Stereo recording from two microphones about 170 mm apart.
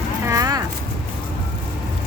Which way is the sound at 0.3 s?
20° right (ahead or behind).